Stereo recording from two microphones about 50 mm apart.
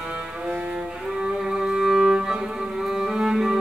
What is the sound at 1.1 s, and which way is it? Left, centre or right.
Music, centre.